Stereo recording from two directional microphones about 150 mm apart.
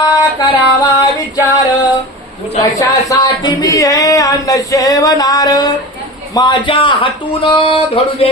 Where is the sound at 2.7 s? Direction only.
25° left (ahead or behind).